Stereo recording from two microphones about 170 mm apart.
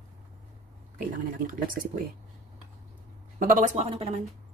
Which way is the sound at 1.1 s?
50° right (ahead or behind).